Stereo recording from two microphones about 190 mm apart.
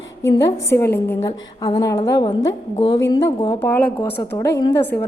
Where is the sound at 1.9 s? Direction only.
25° left (ahead or behind).